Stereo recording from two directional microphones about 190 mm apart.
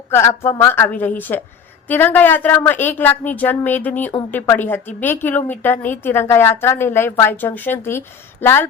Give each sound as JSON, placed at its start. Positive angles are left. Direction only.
{"t": 0.1, "sound": "a woman's voice", "side_deg": 15}